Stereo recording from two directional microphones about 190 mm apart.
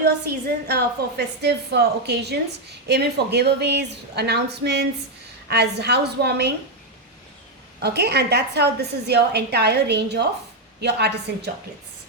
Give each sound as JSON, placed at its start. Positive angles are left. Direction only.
{"t": 0.0, "sound": "a woman's voice", "side_deg": -55}
{"t": 7.8, "sound": "a woman's voice", "side_deg": -60}